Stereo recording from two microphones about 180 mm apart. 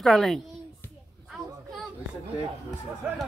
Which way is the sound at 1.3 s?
Centre (ahead or behind).